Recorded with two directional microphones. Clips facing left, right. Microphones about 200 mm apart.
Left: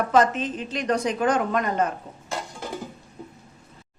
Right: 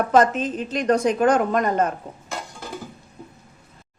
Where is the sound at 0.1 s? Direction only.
45° right (ahead or behind).